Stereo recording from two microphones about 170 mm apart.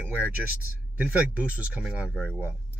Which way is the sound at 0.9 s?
10° right (ahead or behind).